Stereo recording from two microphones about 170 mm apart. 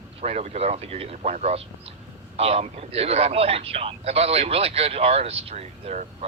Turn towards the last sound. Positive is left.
turn(degrees=-40)  # may be behind; listen again after turning